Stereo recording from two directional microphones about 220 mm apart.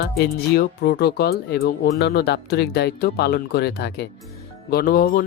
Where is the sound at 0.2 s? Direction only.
45° left (ahead or behind).